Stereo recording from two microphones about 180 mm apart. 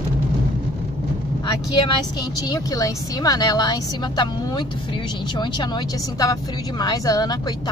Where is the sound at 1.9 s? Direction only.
20° left (ahead or behind).